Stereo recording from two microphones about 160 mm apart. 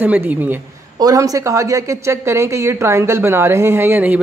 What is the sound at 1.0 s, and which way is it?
A woman's voice, 20° right (ahead or behind).